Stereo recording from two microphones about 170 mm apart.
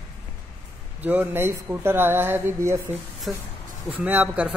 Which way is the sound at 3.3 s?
Centre (ahead or behind).